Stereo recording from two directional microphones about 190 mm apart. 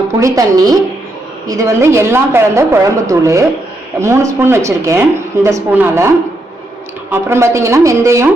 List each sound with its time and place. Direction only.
0.2 s a woman's voice: 15° right (ahead or behind)
7.1 s a woman's voice: 15° right (ahead or behind)